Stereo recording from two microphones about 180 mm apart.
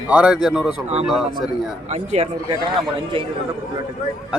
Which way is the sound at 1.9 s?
40° right (ahead or behind).